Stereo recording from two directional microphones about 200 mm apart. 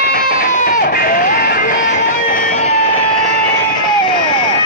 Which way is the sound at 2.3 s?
40° left (ahead or behind).